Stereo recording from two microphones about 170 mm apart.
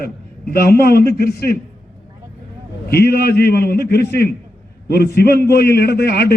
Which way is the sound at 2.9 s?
70° left (ahead or behind).